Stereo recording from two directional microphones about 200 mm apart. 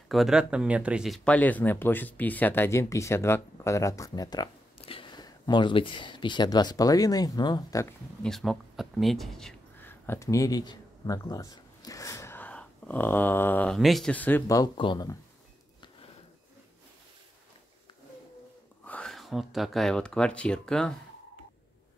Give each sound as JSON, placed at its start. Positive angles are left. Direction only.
{"t": 0.1, "sound": "speech", "side_deg": 0}
{"t": 8.2, "sound": "speech", "side_deg": 0}
{"t": 18.9, "sound": "speech", "side_deg": 5}